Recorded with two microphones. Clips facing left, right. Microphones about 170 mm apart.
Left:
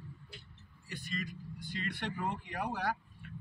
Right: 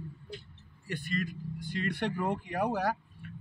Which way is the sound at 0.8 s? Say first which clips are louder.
Right 7 dB; 55° right (ahead or behind).